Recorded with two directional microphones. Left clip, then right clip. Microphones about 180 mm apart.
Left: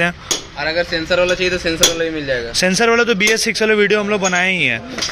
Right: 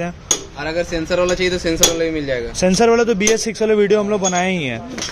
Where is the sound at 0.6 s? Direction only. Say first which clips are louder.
Left 7 dB; 70° right (ahead or behind); by 2.5 s 35° right (ahead or behind).